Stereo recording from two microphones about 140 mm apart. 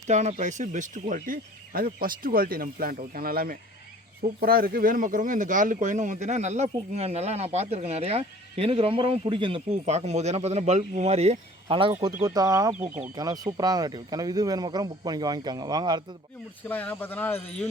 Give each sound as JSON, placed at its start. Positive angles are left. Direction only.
{"t": 0.1, "sound": "speech", "side_deg": -55}
{"t": 9.8, "sound": "speech", "side_deg": -55}
{"t": 12.2, "sound": "speech", "side_deg": -25}
{"t": 16.6, "sound": "speech", "side_deg": 10}